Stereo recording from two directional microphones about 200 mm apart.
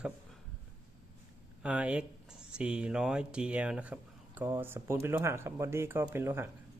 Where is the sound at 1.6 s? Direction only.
5° right (ahead or behind).